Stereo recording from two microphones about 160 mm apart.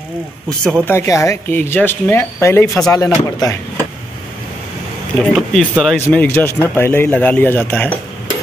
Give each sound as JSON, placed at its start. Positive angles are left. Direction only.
{"t": 0.8, "sound": "speech", "side_deg": 15}
{"t": 5.2, "sound": "speech", "side_deg": 5}